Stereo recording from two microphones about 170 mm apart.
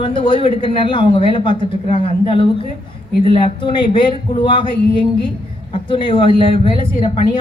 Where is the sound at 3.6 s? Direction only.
30° left (ahead or behind).